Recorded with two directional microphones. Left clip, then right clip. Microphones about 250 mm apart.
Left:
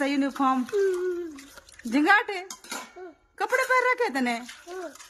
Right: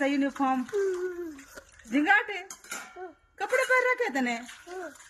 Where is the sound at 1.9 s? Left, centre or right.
Centre.